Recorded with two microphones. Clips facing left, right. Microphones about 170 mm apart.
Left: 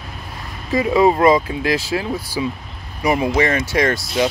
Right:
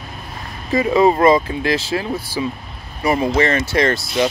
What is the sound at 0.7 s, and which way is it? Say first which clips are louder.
Speech: right 1 dB; 10° left (ahead or behind).